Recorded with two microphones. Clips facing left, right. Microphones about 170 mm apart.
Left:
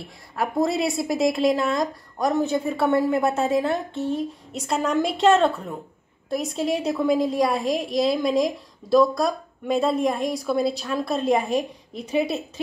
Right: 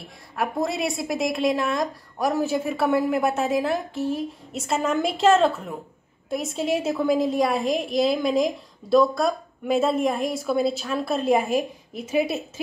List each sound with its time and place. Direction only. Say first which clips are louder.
0.4 s a woman's voice: left 3 dB; centre (ahead or behind)